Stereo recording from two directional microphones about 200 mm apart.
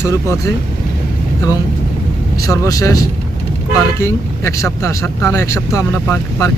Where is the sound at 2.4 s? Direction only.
15° left (ahead or behind).